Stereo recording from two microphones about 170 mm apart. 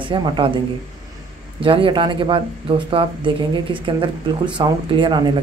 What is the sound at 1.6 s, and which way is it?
Speech, 30° right (ahead or behind).